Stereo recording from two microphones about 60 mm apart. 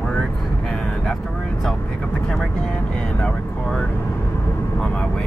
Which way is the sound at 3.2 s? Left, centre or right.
Centre.